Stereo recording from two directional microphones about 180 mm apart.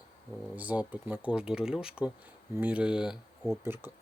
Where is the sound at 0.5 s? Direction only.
10° right (ahead or behind).